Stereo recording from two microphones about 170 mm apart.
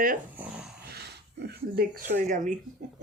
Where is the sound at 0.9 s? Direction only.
75° right (ahead or behind).